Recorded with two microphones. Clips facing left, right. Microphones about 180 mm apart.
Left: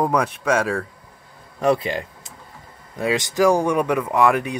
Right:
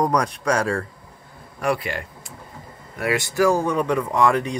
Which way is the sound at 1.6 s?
20° left (ahead or behind).